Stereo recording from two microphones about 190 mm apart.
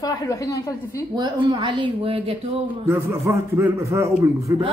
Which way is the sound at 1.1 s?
20° right (ahead or behind).